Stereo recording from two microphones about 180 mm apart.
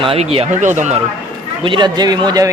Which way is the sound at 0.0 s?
30° right (ahead or behind).